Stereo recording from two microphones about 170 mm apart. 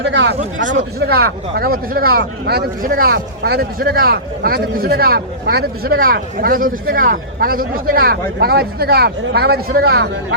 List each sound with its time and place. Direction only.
0.0 s speech: 90° right
0.7 s speech: 80° right